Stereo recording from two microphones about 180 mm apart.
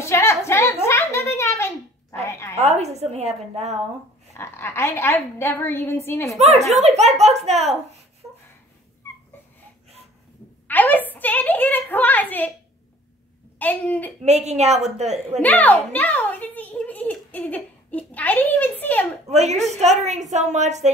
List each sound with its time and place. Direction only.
0.0 s a sound: 15° left (ahead or behind)
2.5 s a sound: 35° right (ahead or behind)
4.3 s a woman's voice: 15° left (ahead or behind)
6.3 s a woman's voice: 35° right (ahead or behind)
10.7 s a sound: 10° left (ahead or behind)
13.6 s a woman's voice: 10° left (ahead or behind)
14.2 s a woman's voice: 40° right (ahead or behind)
15.4 s a child's voice: 10° left (ahead or behind)
19.2 s a woman's voice: 35° right (ahead or behind)